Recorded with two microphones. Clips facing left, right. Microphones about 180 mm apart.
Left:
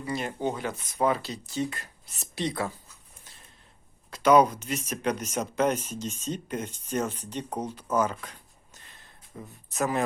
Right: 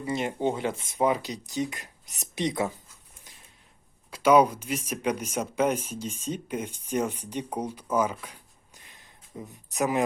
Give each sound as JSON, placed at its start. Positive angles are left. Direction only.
{"t": 0.0, "sound": "speech", "side_deg": -25}
{"t": 4.1, "sound": "speech", "side_deg": -10}